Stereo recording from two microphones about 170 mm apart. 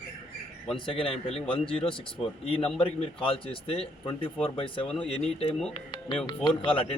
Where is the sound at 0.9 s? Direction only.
30° left (ahead or behind).